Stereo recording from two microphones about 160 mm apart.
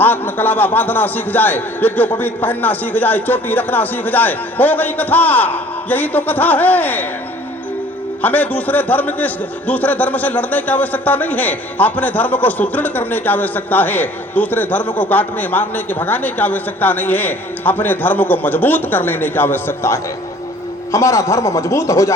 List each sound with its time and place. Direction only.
0.0 s a man's voice: 10° left (ahead or behind)
8.2 s a man's voice: 10° left (ahead or behind)